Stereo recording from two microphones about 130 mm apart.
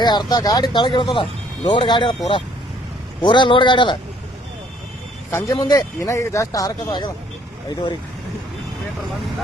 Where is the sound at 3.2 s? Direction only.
40° left (ahead or behind).